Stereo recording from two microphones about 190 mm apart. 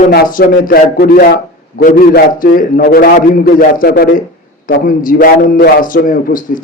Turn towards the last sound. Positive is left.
turn(degrees=45)  # may be behind; listen again after turning